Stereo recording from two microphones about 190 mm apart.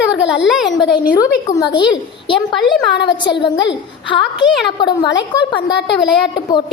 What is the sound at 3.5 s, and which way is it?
Speech, 70° left (ahead or behind).